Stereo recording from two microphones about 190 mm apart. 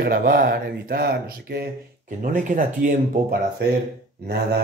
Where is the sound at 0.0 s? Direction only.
50° right (ahead or behind).